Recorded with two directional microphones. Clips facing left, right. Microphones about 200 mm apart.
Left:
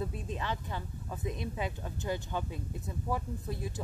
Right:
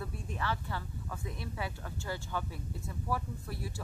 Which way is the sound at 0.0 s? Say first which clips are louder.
Left 2 dB; 20° left (ahead or behind).